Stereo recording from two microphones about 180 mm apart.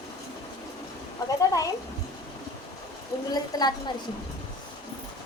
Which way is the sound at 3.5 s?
20° left (ahead or behind).